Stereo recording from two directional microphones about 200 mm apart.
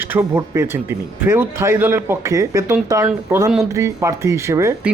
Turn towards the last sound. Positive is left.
turn(degrees=-15)  # may be behind; listen again after turning